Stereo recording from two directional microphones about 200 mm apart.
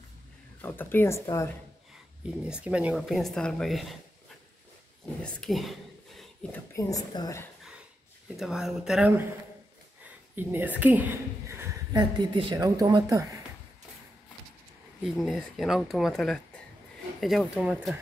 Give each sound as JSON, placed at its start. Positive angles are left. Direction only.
{"t": 0.6, "sound": "speech", "side_deg": 10}
{"t": 2.4, "sound": "speech", "side_deg": -5}
{"t": 5.2, "sound": "speech", "side_deg": 0}
{"t": 8.4, "sound": "speech", "side_deg": 0}
{"t": 10.3, "sound": "a woman's voice", "side_deg": -10}
{"t": 15.0, "sound": "speech", "side_deg": 0}